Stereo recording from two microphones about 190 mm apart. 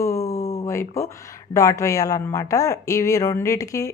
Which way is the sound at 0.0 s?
15° left (ahead or behind).